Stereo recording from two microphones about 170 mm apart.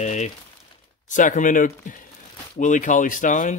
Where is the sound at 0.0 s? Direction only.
40° left (ahead or behind).